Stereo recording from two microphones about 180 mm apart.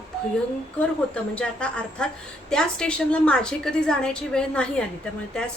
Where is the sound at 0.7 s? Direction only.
5° left (ahead or behind).